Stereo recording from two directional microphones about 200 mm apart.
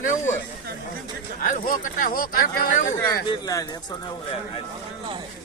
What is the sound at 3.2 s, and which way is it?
Speech, 20° left (ahead or behind).